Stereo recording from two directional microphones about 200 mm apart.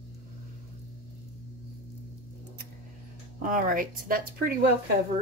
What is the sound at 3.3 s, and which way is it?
Speech, 40° right (ahead or behind).